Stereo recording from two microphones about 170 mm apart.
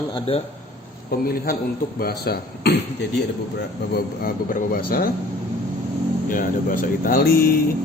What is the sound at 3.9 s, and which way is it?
Speech, 60° left (ahead or behind).